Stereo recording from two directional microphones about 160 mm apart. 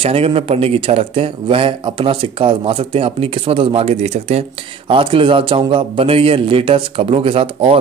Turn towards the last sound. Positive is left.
turn(degrees=-35)  # may be behind; listen again after turning